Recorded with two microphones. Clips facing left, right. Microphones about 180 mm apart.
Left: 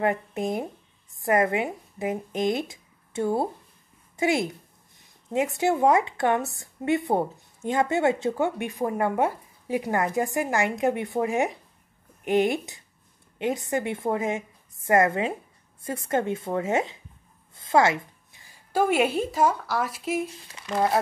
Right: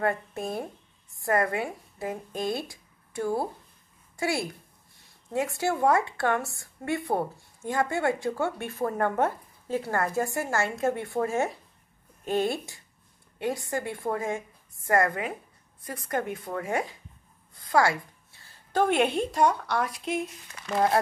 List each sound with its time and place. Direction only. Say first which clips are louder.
0.0 s a woman's voice: left 3 dB; 20° left (ahead or behind); by 21.0 s centre (ahead or behind)